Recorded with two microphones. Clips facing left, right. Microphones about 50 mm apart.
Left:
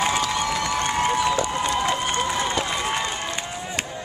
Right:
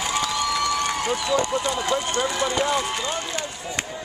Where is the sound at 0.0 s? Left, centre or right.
Left.